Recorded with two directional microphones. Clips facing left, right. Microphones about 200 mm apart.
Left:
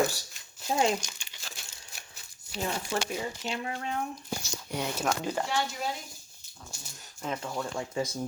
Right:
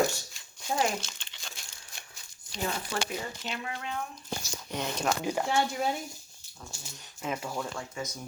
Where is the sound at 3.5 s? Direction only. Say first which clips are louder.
Left 3 dB; 35° left (ahead or behind).